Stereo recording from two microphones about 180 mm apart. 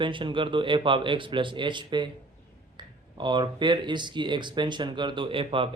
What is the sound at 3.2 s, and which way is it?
Speech, 25° right (ahead or behind).